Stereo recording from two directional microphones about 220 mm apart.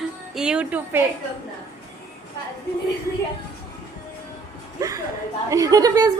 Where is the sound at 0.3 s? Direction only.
5° right (ahead or behind).